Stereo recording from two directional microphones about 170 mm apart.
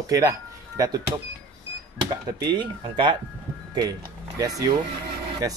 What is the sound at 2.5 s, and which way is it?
Speech, 25° right (ahead or behind).